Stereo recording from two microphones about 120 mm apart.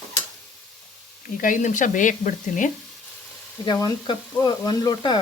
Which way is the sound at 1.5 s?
90° left.